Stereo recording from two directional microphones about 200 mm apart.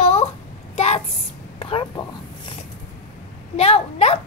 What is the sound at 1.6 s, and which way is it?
Speech, 25° left (ahead or behind).